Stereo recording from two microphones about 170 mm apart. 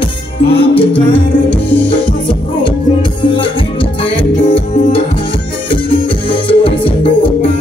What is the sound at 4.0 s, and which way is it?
Music, 35° left (ahead or behind).